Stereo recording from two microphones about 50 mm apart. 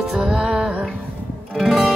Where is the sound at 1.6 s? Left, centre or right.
Centre.